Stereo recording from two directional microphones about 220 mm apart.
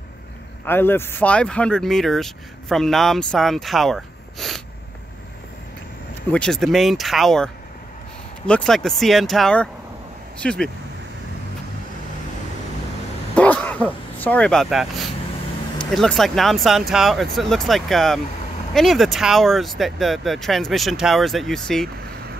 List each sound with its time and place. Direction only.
0.7 s speech: 10° left (ahead or behind)
6.3 s speech: 5° left (ahead or behind)
13.3 s a sound: 5° left (ahead or behind)
14.2 s speech: 5° left (ahead or behind)